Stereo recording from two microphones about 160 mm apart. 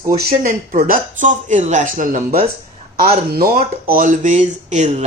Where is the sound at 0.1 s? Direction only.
60° right (ahead or behind).